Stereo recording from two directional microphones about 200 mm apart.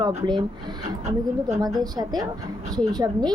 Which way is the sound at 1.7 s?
20° right (ahead or behind).